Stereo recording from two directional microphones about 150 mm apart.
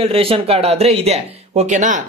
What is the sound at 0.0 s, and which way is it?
Speech, 40° right (ahead or behind).